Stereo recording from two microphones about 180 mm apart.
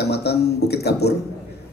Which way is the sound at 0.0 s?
65° left (ahead or behind).